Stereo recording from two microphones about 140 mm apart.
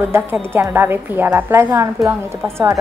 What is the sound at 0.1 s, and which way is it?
A woman's voice, 15° right (ahead or behind).